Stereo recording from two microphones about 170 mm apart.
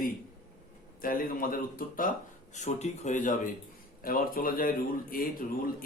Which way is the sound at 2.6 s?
40° left (ahead or behind).